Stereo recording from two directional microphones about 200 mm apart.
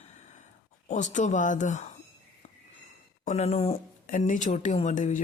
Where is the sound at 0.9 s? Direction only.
40° left (ahead or behind).